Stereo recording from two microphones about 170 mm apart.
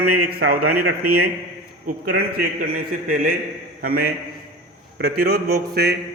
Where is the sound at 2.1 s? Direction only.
65° right (ahead or behind).